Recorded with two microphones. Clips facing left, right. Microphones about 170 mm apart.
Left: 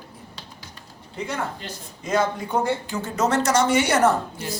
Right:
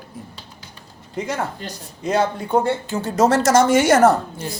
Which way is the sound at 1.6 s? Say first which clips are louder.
Right 6 dB; 30° right (ahead or behind).